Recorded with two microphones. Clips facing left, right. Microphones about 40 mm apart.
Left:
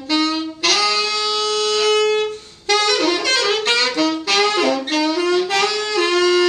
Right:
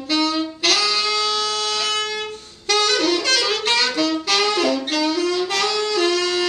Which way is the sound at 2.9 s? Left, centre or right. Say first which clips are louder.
Left 1 dB; centre.